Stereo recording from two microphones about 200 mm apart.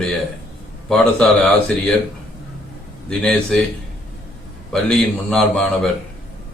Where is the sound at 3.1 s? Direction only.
5° left (ahead or behind).